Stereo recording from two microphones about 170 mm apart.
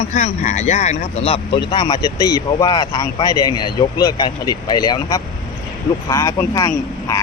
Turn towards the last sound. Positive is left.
turn(degrees=20)  # may be behind; listen again after turning